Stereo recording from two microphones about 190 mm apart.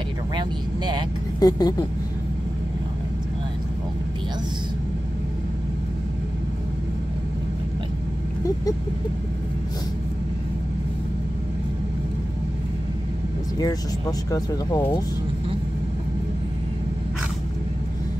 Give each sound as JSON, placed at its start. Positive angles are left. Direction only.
{"t": 1.4, "sound": "speech", "side_deg": 20}
{"t": 14.3, "sound": "speech", "side_deg": 20}